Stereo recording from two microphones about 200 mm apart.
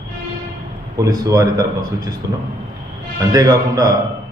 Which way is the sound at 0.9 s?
15° right (ahead or behind).